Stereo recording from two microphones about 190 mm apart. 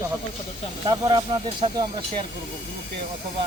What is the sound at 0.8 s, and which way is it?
Speech, 25° right (ahead or behind).